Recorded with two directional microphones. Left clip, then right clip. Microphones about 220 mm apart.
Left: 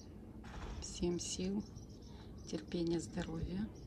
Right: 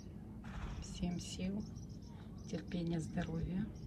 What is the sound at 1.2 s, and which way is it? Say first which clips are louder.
A woman's voice: left 4 dB; 15° left (ahead or behind).